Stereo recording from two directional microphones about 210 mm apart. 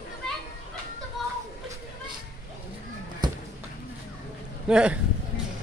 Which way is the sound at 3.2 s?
20° right (ahead or behind).